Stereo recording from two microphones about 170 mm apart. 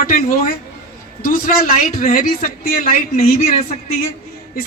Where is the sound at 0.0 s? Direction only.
55° left (ahead or behind).